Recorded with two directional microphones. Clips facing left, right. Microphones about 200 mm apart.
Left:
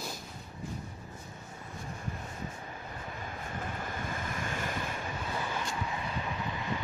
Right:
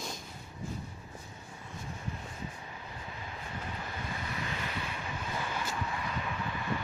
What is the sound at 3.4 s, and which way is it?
Waves, 50° left (ahead or behind).